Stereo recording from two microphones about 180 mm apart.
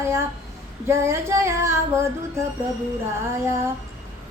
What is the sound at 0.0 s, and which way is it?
Speech, 15° right (ahead or behind).